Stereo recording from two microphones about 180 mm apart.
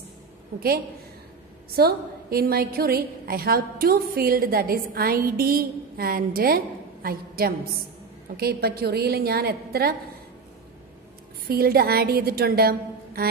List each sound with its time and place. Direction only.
0.6 s a woman's voice: 55° right (ahead or behind)
11.4 s a woman's voice: 55° right (ahead or behind)